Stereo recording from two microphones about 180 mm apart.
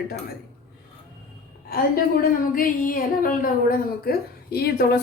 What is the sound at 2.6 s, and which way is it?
A woman's voice, 50° left (ahead or behind).